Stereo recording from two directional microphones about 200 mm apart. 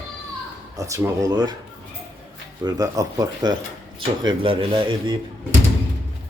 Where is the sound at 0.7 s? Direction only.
15° right (ahead or behind).